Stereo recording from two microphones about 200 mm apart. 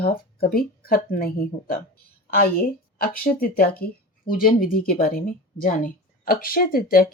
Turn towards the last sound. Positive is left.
turn(degrees=45)  # may be behind; listen again after turning